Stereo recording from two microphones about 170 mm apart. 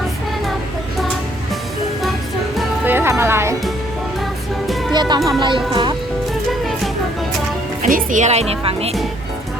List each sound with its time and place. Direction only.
2.8 s music: 10° right (ahead or behind)
4.9 s speech: 25° right (ahead or behind)
6.5 s music: centre (ahead or behind)
7.8 s speech: 50° right (ahead or behind)